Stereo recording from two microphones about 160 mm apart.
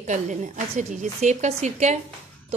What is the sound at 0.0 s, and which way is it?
A woman's voice, 50° right (ahead or behind).